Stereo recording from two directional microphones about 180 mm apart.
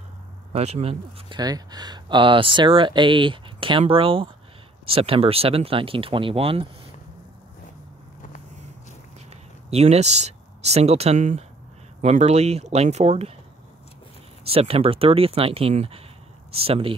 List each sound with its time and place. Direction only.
0.5 s speech: 35° right (ahead or behind)
1.4 s speech: 20° right (ahead or behind)
9.7 s speech: 35° right (ahead or behind)
14.4 s speech: 35° right (ahead or behind)